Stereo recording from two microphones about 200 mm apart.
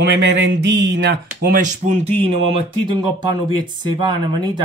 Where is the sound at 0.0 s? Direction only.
65° right (ahead or behind).